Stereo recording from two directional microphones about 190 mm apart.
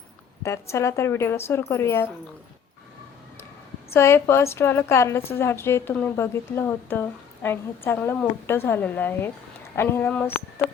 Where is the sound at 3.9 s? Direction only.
15° left (ahead or behind).